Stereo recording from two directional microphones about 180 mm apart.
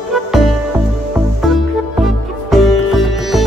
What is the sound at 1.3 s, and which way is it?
Music, centre (ahead or behind).